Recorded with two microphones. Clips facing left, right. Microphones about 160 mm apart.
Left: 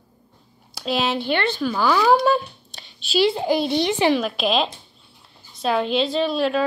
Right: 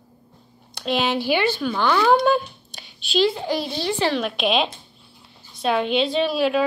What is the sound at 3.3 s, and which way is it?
Speech, 25° left (ahead or behind).